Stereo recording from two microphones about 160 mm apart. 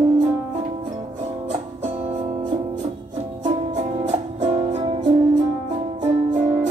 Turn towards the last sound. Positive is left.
turn(degrees=-50)  # may be behind; listen again after turning